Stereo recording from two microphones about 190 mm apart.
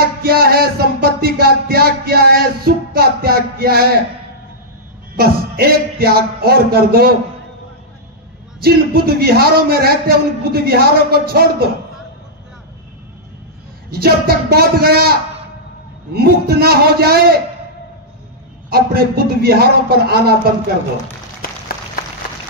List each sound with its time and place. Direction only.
0.2 s music: 50° right (ahead or behind)
5.1 s speech: 50° right (ahead or behind)
8.6 s a man's voice: 55° right (ahead or behind)
13.8 s a man's voice: 55° right (ahead or behind)
18.7 s a man's voice: 55° right (ahead or behind)